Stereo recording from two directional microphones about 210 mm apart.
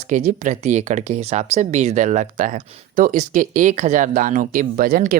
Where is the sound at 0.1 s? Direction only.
35° right (ahead or behind).